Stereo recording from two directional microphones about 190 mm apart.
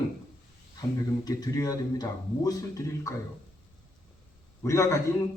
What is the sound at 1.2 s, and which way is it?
Speech, 20° left (ahead or behind).